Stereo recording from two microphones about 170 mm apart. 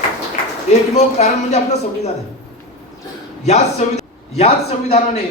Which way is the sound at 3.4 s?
40° left (ahead or behind).